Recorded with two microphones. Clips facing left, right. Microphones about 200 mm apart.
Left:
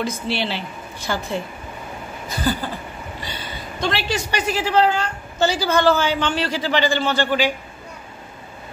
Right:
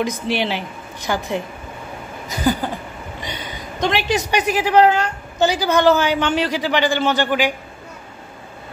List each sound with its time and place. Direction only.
0.0 s a woman's voice: 15° right (ahead or behind)
2.2 s a sound: 15° right (ahead or behind)
3.2 s a man's voice: 20° right (ahead or behind)